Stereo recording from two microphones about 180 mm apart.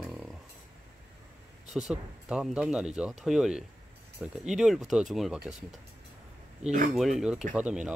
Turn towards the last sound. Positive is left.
turn(degrees=-5)  # may be behind; listen again after turning